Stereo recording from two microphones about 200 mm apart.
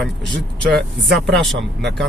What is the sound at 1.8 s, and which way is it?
Speech, 60° right (ahead or behind).